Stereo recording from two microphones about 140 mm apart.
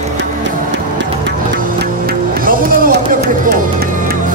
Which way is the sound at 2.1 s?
90° right.